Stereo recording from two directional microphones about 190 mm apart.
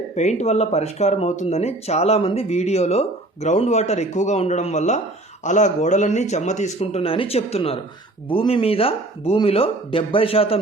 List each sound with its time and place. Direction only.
0.2 s speech: 35° left (ahead or behind)